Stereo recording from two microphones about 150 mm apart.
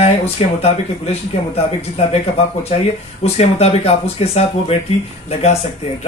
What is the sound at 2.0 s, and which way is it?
Speech, 40° left (ahead or behind).